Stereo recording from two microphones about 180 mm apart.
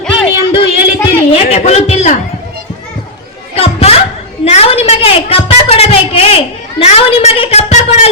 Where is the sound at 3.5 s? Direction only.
35° left (ahead or behind).